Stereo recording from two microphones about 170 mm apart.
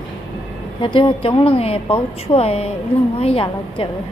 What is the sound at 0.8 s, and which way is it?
A woman's voice, 30° left (ahead or behind).